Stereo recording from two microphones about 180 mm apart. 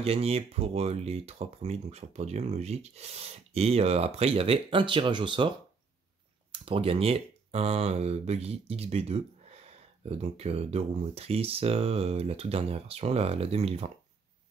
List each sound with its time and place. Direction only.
0.0 s speech: 35° right (ahead or behind)
6.5 s speech: 30° right (ahead or behind)